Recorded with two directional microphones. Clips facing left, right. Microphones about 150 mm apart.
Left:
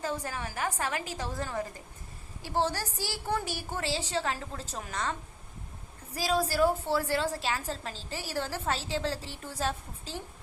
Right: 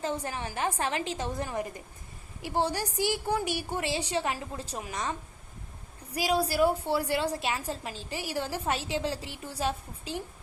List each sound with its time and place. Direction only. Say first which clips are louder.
0.0 s a woman's voice: right 2 dB; 20° right (ahead or behind)
6.1 s a woman's voice: right 1 dB; 15° right (ahead or behind)